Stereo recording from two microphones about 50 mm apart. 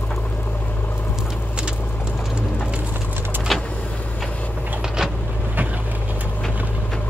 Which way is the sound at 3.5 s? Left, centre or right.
Centre.